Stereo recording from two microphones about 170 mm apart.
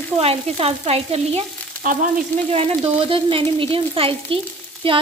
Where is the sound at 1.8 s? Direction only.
50° right (ahead or behind).